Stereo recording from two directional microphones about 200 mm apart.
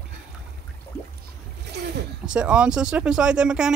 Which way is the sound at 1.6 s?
55° right (ahead or behind).